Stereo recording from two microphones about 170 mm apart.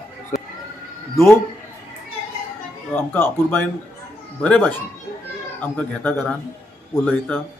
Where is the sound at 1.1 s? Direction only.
15° left (ahead or behind).